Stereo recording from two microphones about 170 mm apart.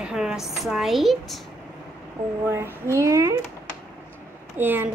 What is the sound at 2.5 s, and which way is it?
Speech, 15° right (ahead or behind).